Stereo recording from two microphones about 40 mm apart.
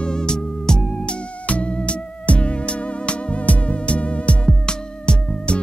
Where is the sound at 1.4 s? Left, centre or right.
Left.